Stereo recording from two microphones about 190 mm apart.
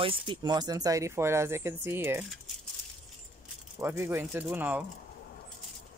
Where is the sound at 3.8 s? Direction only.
10° right (ahead or behind).